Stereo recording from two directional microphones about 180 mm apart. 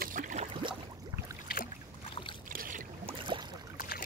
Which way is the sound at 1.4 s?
55° left (ahead or behind).